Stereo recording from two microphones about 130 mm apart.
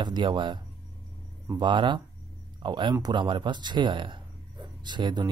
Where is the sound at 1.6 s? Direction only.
35° right (ahead or behind).